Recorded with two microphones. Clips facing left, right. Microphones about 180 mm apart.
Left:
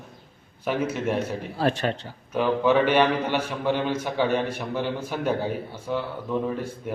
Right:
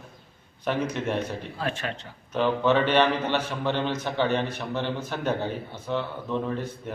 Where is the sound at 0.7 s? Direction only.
5° left (ahead or behind).